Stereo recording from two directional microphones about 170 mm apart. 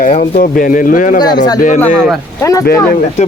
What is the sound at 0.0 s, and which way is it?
Speech, 50° left (ahead or behind).